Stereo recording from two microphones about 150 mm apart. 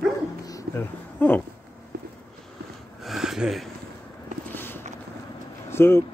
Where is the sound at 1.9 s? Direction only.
90° right.